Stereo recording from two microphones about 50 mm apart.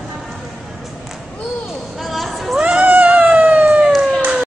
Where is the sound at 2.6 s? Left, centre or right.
Right.